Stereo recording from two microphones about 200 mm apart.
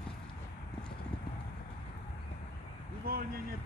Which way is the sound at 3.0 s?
50° right (ahead or behind).